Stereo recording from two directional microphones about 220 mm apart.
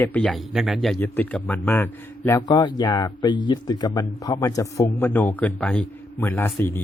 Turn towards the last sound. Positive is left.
turn(degrees=10)  # may be behind; listen again after turning